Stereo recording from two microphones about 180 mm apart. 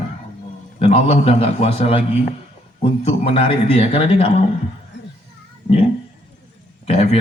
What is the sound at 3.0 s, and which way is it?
Speech, 30° left (ahead or behind).